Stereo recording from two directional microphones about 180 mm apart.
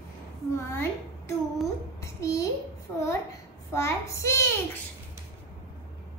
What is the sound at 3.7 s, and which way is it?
Speech, 15° left (ahead or behind).